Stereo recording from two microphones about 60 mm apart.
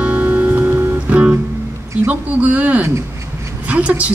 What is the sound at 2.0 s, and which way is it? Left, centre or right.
Speech, right.